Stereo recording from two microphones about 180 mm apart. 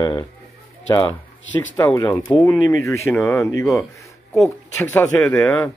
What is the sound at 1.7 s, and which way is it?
Speech, 20° left (ahead or behind).